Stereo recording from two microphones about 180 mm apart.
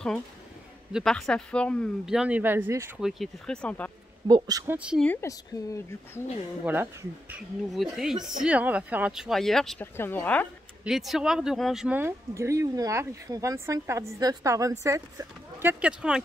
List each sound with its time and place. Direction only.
0.9 s speech: centre (ahead or behind); by 2.9 s 15° right (ahead or behind)
3.0 s speech: centre (ahead or behind)
4.3 s speech: 20° right (ahead or behind)
4.7 s speech: 5° right (ahead or behind)
5.0 s speech: 15° left (ahead or behind)
6.6 s speech: 10° right (ahead or behind); by 10.5 s 10° left (ahead or behind)
10.8 s speech: centre (ahead or behind); by 15.7 s 15° right (ahead or behind)
15.8 s speech: 5° right (ahead or behind)